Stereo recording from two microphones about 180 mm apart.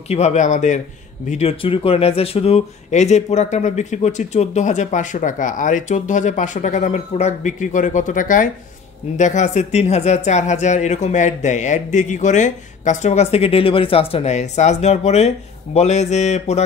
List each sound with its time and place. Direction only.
0.1 s speech: 40° left (ahead or behind)